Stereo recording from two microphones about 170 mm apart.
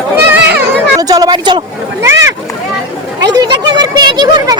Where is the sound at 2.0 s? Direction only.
15° right (ahead or behind).